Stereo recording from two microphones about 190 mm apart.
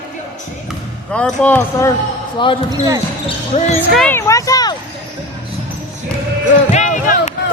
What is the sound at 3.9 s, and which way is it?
Speech, 5° left (ahead or behind).